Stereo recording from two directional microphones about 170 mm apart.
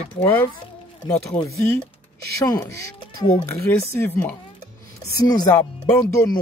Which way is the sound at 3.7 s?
10° left (ahead or behind).